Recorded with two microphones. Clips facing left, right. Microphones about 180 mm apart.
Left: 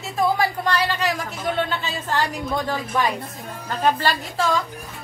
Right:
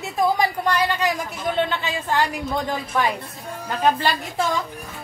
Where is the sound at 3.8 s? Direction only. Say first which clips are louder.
Even; 15° right (ahead or behind).